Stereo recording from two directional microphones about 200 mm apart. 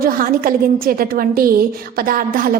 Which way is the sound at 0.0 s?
45° right (ahead or behind).